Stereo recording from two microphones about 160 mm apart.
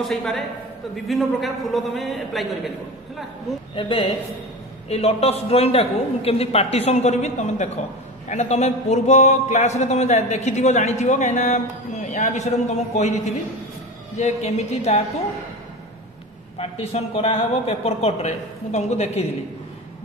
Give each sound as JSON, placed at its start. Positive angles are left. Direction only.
{"t": 0.0, "sound": "a man's voice", "side_deg": 0}
{"t": 3.7, "sound": "a man's voice", "side_deg": 30}
{"t": 14.1, "sound": "a man's voice", "side_deg": 45}
{"t": 16.5, "sound": "a man's voice", "side_deg": 40}